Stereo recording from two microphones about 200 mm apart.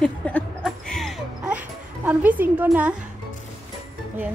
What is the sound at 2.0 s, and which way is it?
Speech, 10° right (ahead or behind).